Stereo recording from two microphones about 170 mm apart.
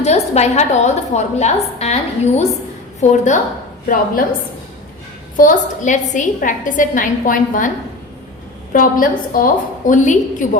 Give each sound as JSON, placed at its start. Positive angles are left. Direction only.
{"t": 0.0, "sound": "a woman's voice", "side_deg": 40}
{"t": 3.0, "sound": "a woman's voice", "side_deg": 45}
{"t": 5.4, "sound": "a woman's voice", "side_deg": 50}
{"t": 8.7, "sound": "a woman's voice", "side_deg": 55}